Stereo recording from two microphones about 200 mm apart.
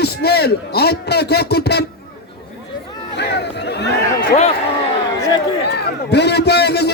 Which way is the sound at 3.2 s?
55° left (ahead or behind).